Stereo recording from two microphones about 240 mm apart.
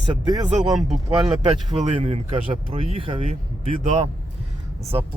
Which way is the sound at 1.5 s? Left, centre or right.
Right.